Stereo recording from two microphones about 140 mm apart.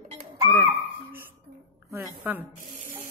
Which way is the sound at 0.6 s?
20° right (ahead or behind).